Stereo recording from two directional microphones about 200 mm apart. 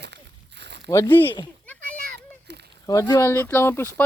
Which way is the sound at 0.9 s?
15° left (ahead or behind).